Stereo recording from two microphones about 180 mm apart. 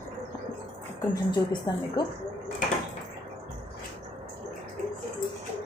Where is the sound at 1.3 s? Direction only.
25° left (ahead or behind).